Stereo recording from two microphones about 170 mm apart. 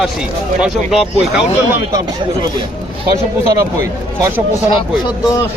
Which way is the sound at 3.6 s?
15° right (ahead or behind).